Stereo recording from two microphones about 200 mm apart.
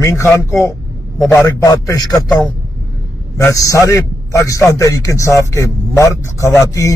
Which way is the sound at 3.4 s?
10° left (ahead or behind).